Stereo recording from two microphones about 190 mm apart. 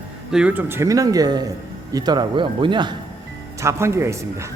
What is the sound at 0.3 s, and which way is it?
Speech, 5° right (ahead or behind).